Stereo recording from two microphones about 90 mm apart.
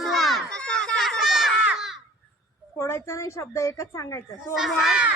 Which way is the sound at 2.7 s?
30° left (ahead or behind).